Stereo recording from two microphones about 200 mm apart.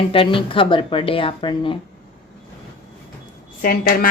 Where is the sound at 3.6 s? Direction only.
45° left (ahead or behind).